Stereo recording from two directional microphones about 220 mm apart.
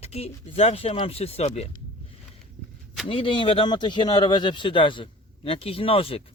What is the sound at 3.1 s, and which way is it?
Speech, 25° left (ahead or behind).